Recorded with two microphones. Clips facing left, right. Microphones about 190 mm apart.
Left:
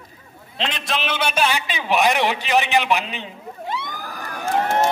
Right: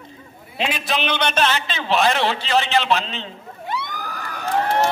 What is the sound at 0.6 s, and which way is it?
A man's voice, 5° right (ahead or behind).